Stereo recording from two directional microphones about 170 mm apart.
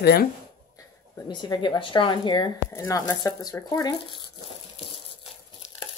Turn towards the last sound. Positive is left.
turn(degrees=25)  # may be behind; listen again after turning